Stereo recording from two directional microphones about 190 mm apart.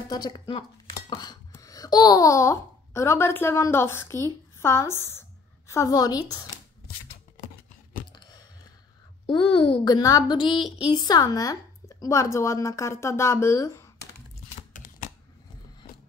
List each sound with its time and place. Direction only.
0.1 s a woman's voice: 20° left (ahead or behind)
9.8 s a woman's voice: 20° left (ahead or behind)
14.5 s a sound: 35° left (ahead or behind)